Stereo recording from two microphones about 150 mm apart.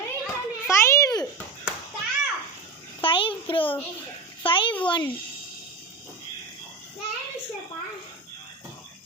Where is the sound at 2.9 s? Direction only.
35° left (ahead or behind).